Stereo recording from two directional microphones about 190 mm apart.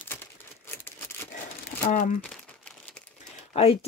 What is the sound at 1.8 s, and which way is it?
Speech, 45° left (ahead or behind).